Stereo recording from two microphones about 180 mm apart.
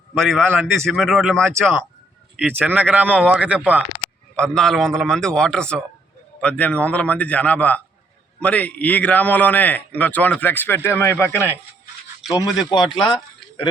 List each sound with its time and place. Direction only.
0.1 s a man's voice: centre (ahead or behind)
0.4 s speech: 10° right (ahead or behind)
0.9 s a man's voice: centre (ahead or behind)
4.4 s a man's voice: 5° left (ahead or behind)
12.5 s speech: 25° left (ahead or behind)